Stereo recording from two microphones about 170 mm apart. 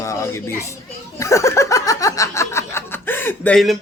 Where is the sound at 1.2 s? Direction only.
15° left (ahead or behind).